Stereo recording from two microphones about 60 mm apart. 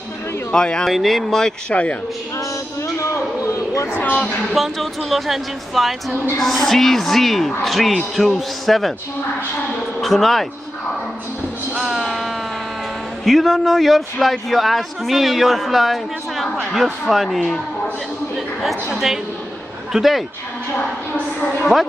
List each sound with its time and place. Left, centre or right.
0.5 s speech: centre
0.9 s a man's voice: centre
1.7 s speech: left
3.4 s a sound: left
3.9 s speech: left
4.5 s a man's voice: centre
9.9 s a man's voice: centre
11.7 s music: centre
13.2 s a man's voice: centre
18.6 s a man's voice: centre